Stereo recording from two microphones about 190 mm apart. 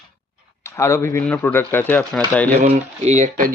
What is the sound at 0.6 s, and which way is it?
Speech, 15° left (ahead or behind).